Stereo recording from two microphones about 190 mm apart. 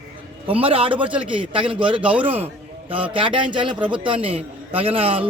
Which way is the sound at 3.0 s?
25° right (ahead or behind).